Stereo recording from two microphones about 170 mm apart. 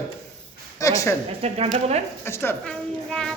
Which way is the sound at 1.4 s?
35° right (ahead or behind).